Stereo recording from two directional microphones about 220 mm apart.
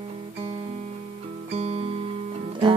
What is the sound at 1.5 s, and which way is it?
Music, 25° right (ahead or behind).